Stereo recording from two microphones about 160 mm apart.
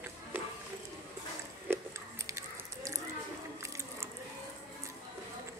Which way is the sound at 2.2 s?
20° right (ahead or behind).